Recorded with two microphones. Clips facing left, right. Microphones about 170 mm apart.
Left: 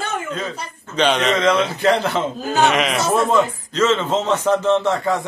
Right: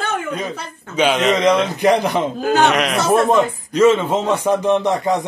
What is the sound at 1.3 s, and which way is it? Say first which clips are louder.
Speech: right 2 dB; 15° right (ahead or behind).